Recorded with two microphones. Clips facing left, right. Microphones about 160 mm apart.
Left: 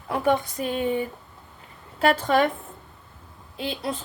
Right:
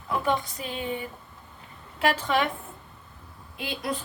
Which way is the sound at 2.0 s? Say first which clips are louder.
Left 4 dB; 40° left (ahead or behind).